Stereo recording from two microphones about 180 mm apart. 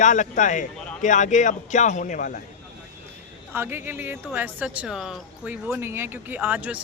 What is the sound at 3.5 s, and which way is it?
Speech, 10° right (ahead or behind).